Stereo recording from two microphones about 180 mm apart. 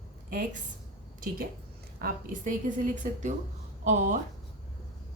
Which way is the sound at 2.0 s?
50° right (ahead or behind).